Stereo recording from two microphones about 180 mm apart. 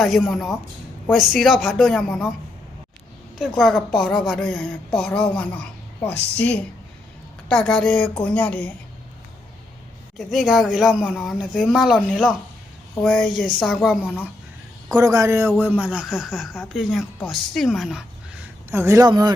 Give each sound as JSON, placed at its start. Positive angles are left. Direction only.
{"t": 0.0, "sound": "a woman's voice", "side_deg": 0}
{"t": 3.3, "sound": "a woman's voice", "side_deg": 0}
{"t": 7.4, "sound": "a woman's voice", "side_deg": 5}
{"t": 10.2, "sound": "a woman's voice", "side_deg": 0}
{"t": 14.9, "sound": "a woman's voice", "side_deg": -20}